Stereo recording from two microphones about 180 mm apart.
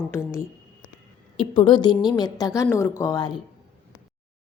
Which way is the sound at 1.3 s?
30° left (ahead or behind).